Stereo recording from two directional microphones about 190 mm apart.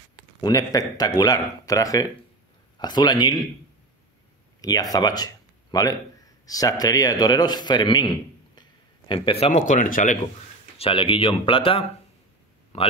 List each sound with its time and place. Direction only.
0.4 s speech: 20° left (ahead or behind)
4.6 s a man's voice: 20° left (ahead or behind); by 10.1 s 45° left (ahead or behind)
10.8 s speech: 25° left (ahead or behind)